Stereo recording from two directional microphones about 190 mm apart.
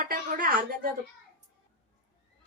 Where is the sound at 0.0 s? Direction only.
50° right (ahead or behind).